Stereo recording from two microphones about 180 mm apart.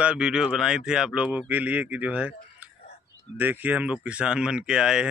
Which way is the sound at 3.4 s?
10° right (ahead or behind).